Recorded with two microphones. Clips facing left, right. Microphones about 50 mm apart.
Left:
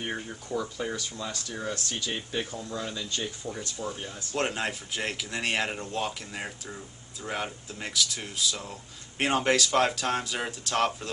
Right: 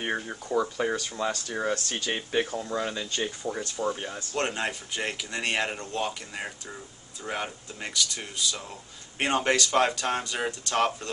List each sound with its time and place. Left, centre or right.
0.0 s speech: right
3.5 s speech: right
4.4 s speech: centre